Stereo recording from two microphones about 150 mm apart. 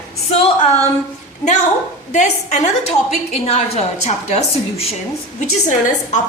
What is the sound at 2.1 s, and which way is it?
A woman's voice, 50° left (ahead or behind).